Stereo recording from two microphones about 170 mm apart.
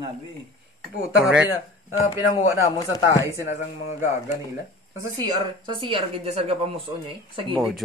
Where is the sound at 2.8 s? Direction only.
20° left (ahead or behind).